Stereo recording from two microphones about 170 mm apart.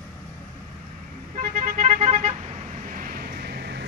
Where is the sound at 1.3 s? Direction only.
50° right (ahead or behind).